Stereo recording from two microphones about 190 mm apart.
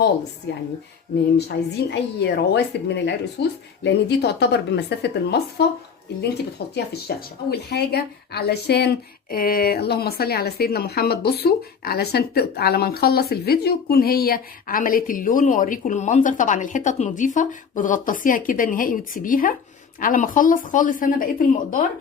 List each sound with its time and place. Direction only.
0.5 s a woman's voice: 65° left (ahead or behind); by 21.8 s 45° left (ahead or behind)